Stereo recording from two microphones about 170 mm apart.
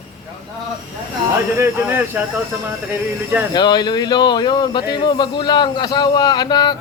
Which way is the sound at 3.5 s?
25° left (ahead or behind).